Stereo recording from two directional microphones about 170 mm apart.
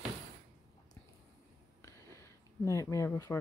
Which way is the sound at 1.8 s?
15° left (ahead or behind).